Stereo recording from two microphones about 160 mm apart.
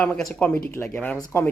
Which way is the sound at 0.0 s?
5° left (ahead or behind).